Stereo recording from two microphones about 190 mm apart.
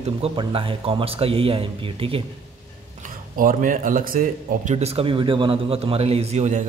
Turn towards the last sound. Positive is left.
turn(degrees=-35)  # may be behind; listen again after turning